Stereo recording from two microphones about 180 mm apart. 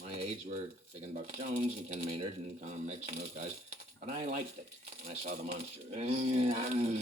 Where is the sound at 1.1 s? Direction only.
40° right (ahead or behind).